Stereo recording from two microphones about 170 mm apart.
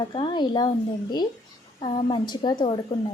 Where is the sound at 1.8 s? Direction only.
30° left (ahead or behind).